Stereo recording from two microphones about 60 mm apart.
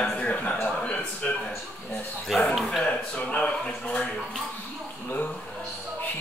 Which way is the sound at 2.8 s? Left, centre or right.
Centre.